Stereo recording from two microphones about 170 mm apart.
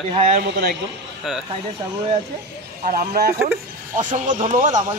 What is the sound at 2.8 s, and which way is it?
Speech, 60° right (ahead or behind).